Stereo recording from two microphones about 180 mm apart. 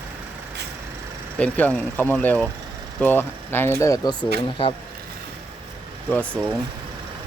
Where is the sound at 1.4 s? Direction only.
10° left (ahead or behind); by 4.7 s 30° left (ahead or behind).